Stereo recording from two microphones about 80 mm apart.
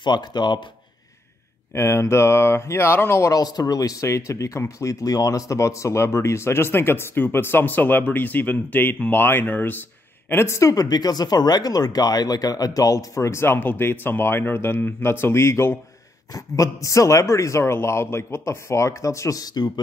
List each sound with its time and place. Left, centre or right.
0.0 s speech: left
1.7 s speech: left
3.3 s speech: left
10.3 s speech: left
16.3 s speech: left